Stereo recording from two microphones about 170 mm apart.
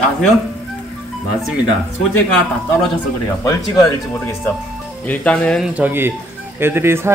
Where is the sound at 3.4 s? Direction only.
20° left (ahead or behind).